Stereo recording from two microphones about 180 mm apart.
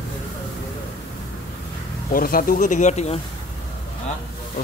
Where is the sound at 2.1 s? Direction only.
55° left (ahead or behind).